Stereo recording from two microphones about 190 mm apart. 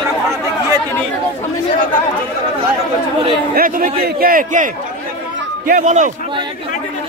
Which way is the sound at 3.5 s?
45° right (ahead or behind).